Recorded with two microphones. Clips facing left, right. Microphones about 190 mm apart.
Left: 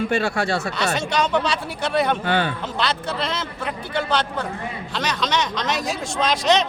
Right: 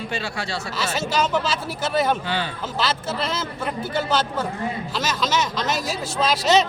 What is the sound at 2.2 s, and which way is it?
Speech, 55° left (ahead or behind).